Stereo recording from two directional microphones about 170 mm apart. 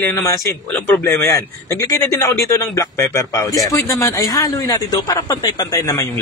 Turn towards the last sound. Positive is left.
turn(degrees=20)  # may be behind; listen again after turning